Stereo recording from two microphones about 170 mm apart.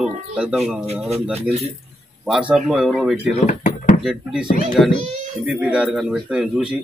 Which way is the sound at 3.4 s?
50° left (ahead or behind).